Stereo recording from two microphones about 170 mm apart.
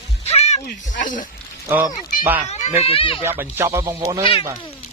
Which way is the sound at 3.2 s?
15° right (ahead or behind).